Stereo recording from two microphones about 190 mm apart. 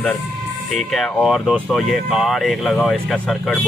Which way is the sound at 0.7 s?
Centre (ahead or behind).